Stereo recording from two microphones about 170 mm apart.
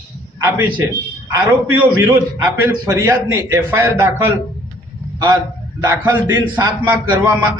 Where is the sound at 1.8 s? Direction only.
10° right (ahead or behind).